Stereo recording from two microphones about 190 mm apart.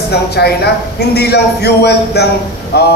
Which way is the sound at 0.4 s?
60° left (ahead or behind).